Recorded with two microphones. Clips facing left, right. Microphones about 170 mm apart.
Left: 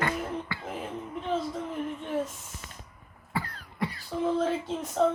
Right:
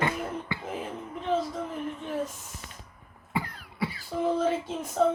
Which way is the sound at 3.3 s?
15° right (ahead or behind).